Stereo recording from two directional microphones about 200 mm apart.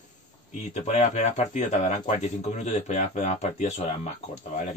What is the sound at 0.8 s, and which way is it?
Speech, 35° left (ahead or behind).